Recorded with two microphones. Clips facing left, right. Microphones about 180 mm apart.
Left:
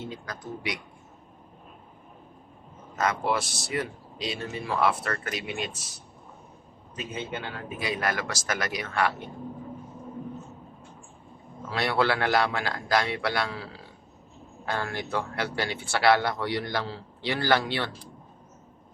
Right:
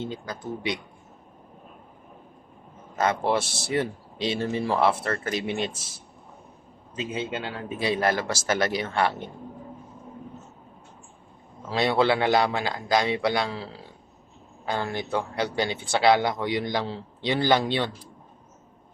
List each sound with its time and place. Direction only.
0.0 s speech: 25° right (ahead or behind)
2.9 s speech: 30° right (ahead or behind)
7.1 s speech: 20° right (ahead or behind)
11.7 s speech: 20° right (ahead or behind)